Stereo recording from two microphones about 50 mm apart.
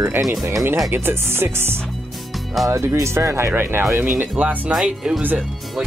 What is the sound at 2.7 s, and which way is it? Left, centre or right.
Speech, right.